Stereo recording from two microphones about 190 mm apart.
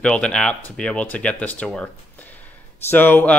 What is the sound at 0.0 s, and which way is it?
Speech, 5° left (ahead or behind).